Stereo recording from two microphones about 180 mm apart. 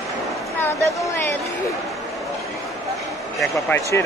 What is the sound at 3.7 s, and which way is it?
Speech, 15° left (ahead or behind).